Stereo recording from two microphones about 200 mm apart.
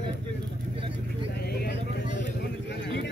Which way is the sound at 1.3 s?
50° left (ahead or behind).